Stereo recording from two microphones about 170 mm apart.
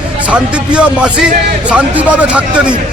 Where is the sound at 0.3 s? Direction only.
5° right (ahead or behind).